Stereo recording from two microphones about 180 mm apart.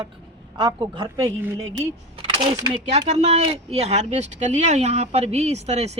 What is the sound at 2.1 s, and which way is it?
A man's voice, 30° right (ahead or behind).